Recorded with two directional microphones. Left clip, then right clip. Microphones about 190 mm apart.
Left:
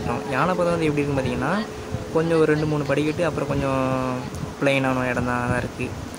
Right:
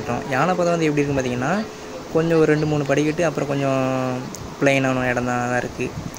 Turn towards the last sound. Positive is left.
turn(degrees=-10)  # may be behind; listen again after turning